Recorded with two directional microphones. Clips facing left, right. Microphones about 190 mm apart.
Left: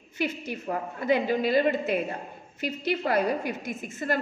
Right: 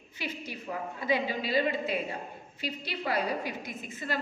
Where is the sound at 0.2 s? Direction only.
50° left (ahead or behind).